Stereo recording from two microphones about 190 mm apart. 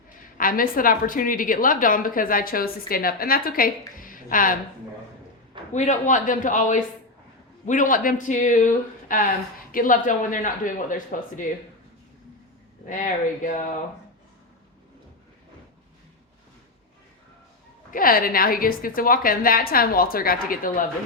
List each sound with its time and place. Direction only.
0.3 s a woman's voice: 50° left (ahead or behind)
5.7 s a man's voice: 40° left (ahead or behind)
12.9 s a woman's voice: 45° left (ahead or behind)
17.9 s a woman's voice: 50° left (ahead or behind)